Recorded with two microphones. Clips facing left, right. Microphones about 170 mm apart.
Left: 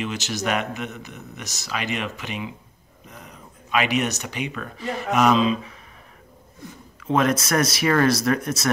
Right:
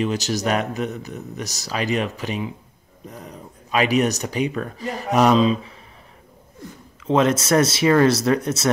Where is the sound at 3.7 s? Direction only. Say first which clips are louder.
Right 4 dB; 35° right (ahead or behind).